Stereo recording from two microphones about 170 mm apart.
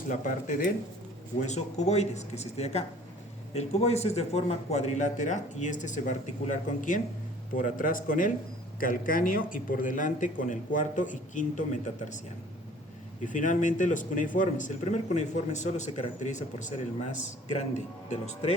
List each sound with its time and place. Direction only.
0.1 s a man's voice: 50° left (ahead or behind)
13.2 s a man's voice: 50° left (ahead or behind)